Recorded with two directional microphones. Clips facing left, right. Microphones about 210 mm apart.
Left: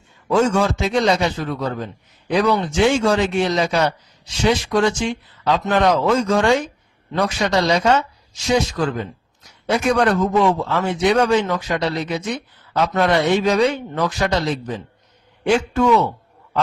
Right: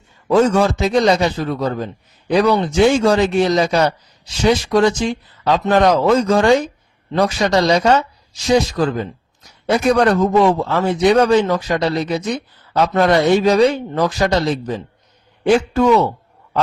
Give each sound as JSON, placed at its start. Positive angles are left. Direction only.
{"t": 0.3, "sound": "a man's voice", "side_deg": -35}